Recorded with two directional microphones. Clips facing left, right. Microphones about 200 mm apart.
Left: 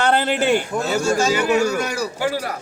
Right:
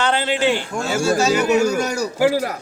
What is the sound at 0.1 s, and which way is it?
Speech, 55° left (ahead or behind).